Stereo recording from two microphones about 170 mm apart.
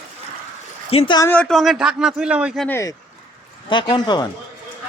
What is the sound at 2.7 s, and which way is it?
Speech, 15° left (ahead or behind).